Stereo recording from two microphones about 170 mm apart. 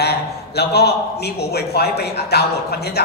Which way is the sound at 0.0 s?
70° left (ahead or behind).